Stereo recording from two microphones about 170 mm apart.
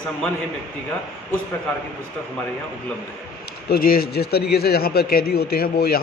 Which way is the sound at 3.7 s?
60° left (ahead or behind).